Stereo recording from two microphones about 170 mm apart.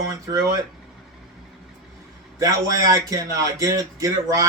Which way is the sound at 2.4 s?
20° right (ahead or behind).